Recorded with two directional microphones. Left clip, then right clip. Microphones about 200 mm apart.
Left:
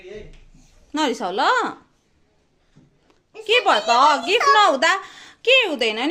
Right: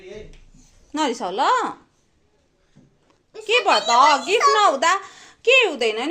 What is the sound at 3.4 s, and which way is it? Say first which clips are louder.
A woman's voice: left 1 dB; 25° left (ahead or behind).